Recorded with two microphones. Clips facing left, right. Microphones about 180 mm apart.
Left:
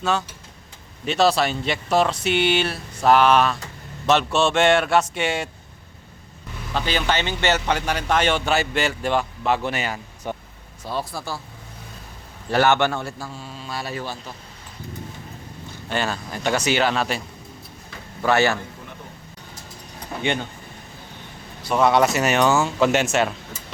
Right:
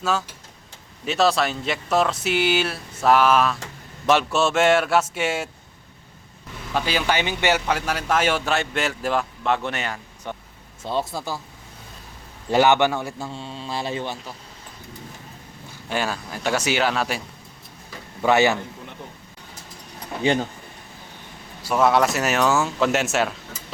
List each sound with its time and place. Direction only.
0.0 s speech: centre (ahead or behind)
6.7 s speech: 10° right (ahead or behind)
10.8 s a man's voice: 20° right (ahead or behind)
12.5 s a man's voice: 15° right (ahead or behind)
15.9 s speech: 10° right (ahead or behind)
18.2 s a man's voice: 15° right (ahead or behind)
21.6 s speech: 5° right (ahead or behind)